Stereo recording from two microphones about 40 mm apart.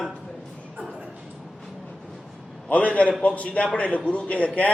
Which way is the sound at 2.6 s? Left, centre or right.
Left.